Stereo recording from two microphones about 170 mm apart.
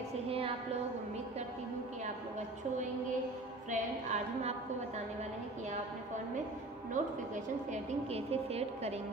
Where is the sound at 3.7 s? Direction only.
40° right (ahead or behind).